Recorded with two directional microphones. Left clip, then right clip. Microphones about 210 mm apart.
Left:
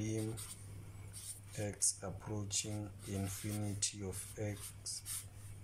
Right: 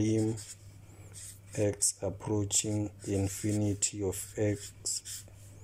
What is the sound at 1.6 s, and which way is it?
Speech, 35° right (ahead or behind).